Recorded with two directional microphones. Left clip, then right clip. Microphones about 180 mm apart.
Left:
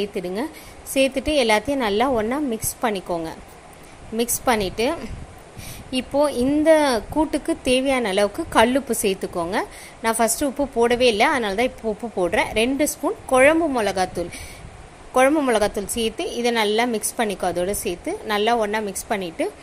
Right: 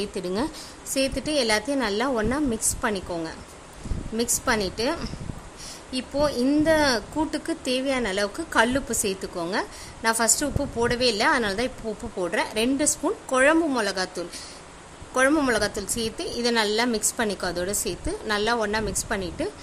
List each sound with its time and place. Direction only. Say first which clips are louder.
0.0 s a woman's voice: left 2 dB; 5° left (ahead or behind)
15.4 s speech: left 4 dB; 10° left (ahead or behind)